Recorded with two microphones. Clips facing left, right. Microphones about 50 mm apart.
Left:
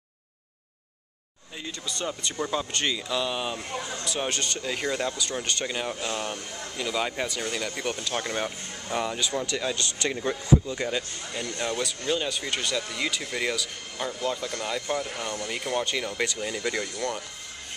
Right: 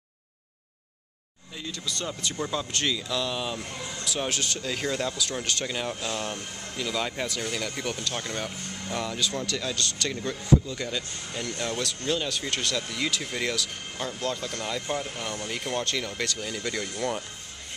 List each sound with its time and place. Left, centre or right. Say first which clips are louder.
1.6 s speech: left 1 dB; centre
4.1 s speech: even; centre